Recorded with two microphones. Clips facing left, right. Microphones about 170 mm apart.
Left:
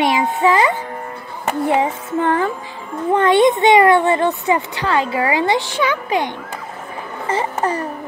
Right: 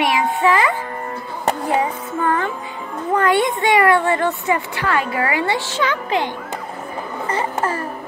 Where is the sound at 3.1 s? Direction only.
25° left (ahead or behind).